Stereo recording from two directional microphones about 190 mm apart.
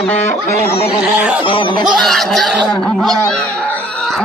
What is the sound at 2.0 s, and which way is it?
Speech, centre (ahead or behind).